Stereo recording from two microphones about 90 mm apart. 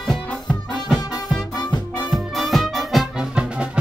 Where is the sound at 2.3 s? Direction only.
Centre (ahead or behind).